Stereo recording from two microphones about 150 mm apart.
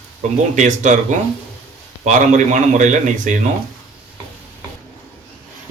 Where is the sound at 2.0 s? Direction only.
55° right (ahead or behind).